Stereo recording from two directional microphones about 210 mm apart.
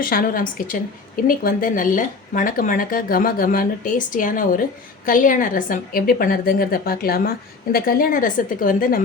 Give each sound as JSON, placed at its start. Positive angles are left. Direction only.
{"t": 0.0, "sound": "a woman's voice", "side_deg": 45}